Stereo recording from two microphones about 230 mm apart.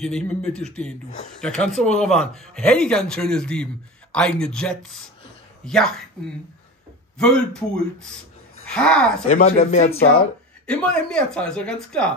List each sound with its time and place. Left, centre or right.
0.0 s speech: centre
7.2 s speech: centre
9.3 s speech: left
10.7 s speech: centre